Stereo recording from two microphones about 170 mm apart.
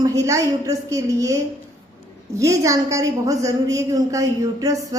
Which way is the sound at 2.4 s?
20° right (ahead or behind).